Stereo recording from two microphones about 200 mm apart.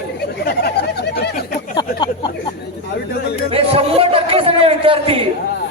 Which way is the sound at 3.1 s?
55° left (ahead or behind).